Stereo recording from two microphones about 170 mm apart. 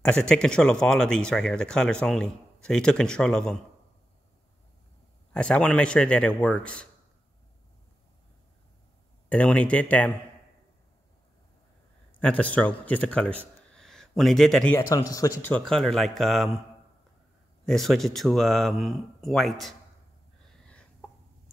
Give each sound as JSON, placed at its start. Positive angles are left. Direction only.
{"t": 0.0, "sound": "speech", "side_deg": 5}
{"t": 5.3, "sound": "a man's voice", "side_deg": 5}
{"t": 9.3, "sound": "a man's voice", "side_deg": 10}
{"t": 12.2, "sound": "a man's voice", "side_deg": 10}
{"t": 15.0, "sound": "speech", "side_deg": 20}
{"t": 15.5, "sound": "speech", "side_deg": 5}
{"t": 17.6, "sound": "speech", "side_deg": 0}
{"t": 20.4, "sound": "a sound", "side_deg": 5}